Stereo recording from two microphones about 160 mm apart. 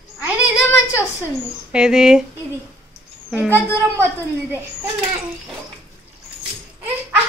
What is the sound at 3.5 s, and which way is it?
Speech, 15° left (ahead or behind).